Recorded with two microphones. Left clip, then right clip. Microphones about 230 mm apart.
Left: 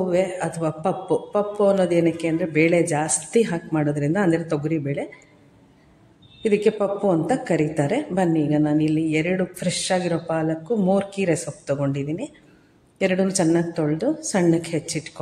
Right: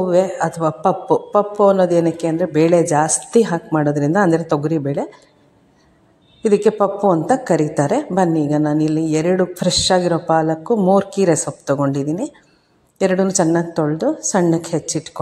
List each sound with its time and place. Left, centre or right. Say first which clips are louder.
0.1 s a woman's voice: right 6 dB; centre
6.4 s a woman's voice: right 5 dB; right